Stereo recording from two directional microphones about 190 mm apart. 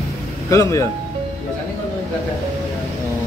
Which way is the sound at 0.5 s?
15° left (ahead or behind).